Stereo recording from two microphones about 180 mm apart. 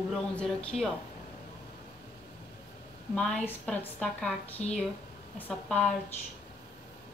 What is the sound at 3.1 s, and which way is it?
A woman's voice, 5° left (ahead or behind).